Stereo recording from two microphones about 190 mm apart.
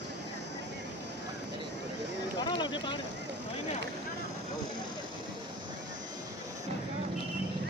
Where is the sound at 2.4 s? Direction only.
25° left (ahead or behind).